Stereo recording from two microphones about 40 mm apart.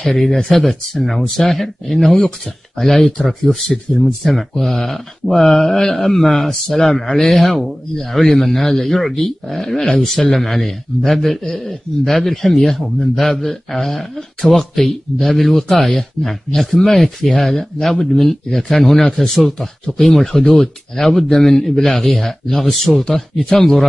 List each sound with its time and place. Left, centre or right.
0.1 s speech: centre